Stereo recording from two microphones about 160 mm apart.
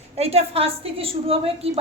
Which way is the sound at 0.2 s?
40° right (ahead or behind).